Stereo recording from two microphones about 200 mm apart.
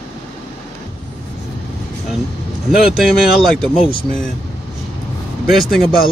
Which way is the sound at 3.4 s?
Centre (ahead or behind).